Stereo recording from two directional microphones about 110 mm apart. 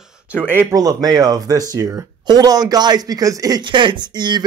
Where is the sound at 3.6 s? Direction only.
45° right (ahead or behind).